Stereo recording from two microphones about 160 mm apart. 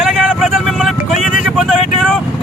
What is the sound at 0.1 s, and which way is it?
Vehicle, 5° right (ahead or behind).